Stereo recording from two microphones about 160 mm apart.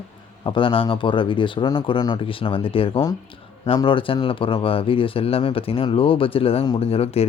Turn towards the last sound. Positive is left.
turn(degrees=40)  # may be behind; listen again after turning